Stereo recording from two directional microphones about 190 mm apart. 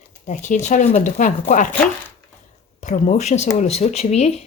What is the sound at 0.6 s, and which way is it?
Speech, 40° left (ahead or behind).